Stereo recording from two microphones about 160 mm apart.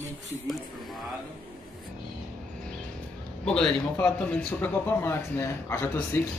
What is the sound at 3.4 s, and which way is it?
Speech, 5° left (ahead or behind).